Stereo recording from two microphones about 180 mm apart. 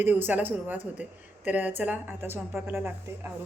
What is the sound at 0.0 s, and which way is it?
Speech, 10° right (ahead or behind).